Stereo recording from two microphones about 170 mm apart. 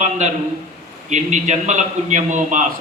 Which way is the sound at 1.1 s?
45° right (ahead or behind).